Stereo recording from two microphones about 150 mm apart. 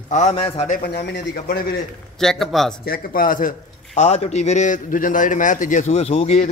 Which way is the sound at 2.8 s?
80° left.